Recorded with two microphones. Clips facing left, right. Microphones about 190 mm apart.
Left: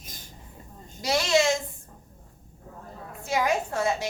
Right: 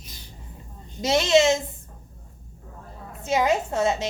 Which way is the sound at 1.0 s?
20° right (ahead or behind).